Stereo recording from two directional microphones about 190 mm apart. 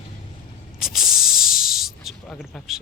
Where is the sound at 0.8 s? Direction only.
Centre (ahead or behind).